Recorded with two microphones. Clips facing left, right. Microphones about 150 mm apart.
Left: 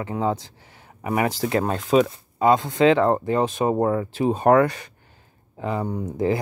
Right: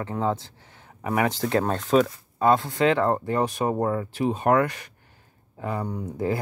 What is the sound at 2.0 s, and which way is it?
Speech, 15° left (ahead or behind).